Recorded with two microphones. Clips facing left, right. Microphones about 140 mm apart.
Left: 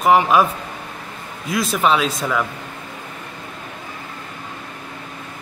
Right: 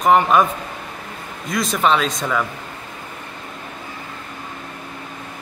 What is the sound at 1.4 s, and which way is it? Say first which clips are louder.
Speech: even; 5° left (ahead or behind).